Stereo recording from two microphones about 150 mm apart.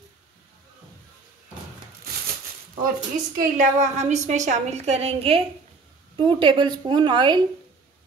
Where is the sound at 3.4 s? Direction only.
55° right (ahead or behind); by 7.5 s 30° right (ahead or behind).